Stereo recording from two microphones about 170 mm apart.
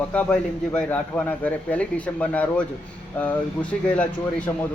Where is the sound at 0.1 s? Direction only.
5° left (ahead or behind).